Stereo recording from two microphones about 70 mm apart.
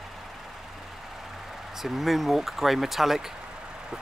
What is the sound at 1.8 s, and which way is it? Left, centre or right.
Speech, centre.